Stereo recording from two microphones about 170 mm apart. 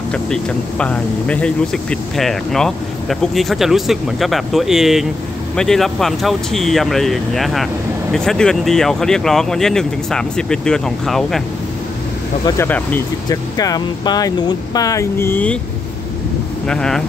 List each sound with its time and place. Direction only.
0.1 s speech: 5° left (ahead or behind)
12.4 s speech: 15° left (ahead or behind)
13.3 s speech: 20° left (ahead or behind)
16.6 s speech: 5° left (ahead or behind)